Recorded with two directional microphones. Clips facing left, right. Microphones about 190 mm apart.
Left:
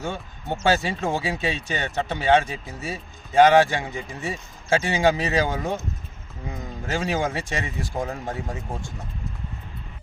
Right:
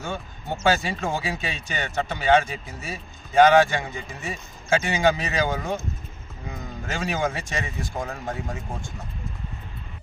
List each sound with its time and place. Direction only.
0.6 s speech: 30° left (ahead or behind)
6.8 s speech: 30° left (ahead or behind)